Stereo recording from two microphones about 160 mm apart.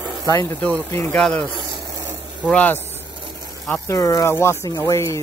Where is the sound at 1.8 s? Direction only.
20° right (ahead or behind).